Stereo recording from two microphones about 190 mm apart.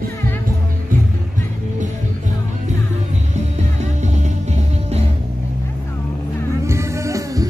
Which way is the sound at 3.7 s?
35° right (ahead or behind).